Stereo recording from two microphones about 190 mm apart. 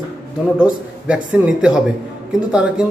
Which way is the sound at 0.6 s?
5° right (ahead or behind).